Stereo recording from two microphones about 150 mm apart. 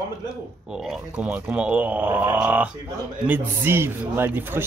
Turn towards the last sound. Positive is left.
turn(degrees=-15)  # may be behind; listen again after turning